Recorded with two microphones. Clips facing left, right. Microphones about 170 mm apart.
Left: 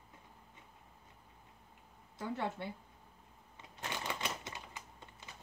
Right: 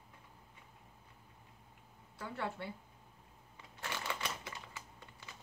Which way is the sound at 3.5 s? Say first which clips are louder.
Left 1 dB; 20° left (ahead or behind).